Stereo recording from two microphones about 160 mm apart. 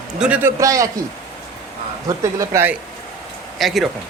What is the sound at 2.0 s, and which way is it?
Speech, 20° right (ahead or behind).